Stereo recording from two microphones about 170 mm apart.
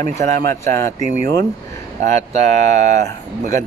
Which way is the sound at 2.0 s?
45° right (ahead or behind).